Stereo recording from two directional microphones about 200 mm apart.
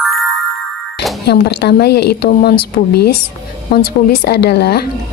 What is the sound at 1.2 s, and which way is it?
A woman's voice, 55° left (ahead or behind).